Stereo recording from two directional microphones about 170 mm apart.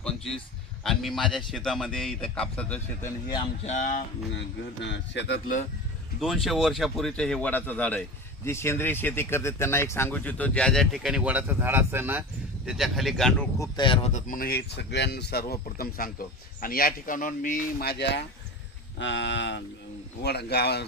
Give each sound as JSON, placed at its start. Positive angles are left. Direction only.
{"t": 0.9, "sound": "a man's voice", "side_deg": 0}
{"t": 3.6, "sound": "speech", "side_deg": 45}
{"t": 4.8, "sound": "speech", "side_deg": 90}
{"t": 6.1, "sound": "a man's voice", "side_deg": 0}
{"t": 12.6, "sound": "a man's voice", "side_deg": 0}
{"t": 13.6, "sound": "speech", "side_deg": 25}
{"t": 14.1, "sound": "speech", "side_deg": 50}
{"t": 20.2, "sound": "speech", "side_deg": 75}